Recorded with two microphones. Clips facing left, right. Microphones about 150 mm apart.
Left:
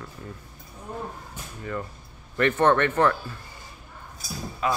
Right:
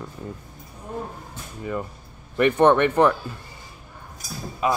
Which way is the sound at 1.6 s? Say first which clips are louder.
Right 4 dB; 15° right (ahead or behind).